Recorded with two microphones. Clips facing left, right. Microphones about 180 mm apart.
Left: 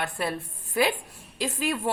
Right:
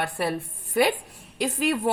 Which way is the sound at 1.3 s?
60° right (ahead or behind).